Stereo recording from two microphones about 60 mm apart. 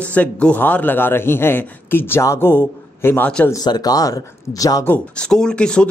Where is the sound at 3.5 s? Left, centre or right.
Left.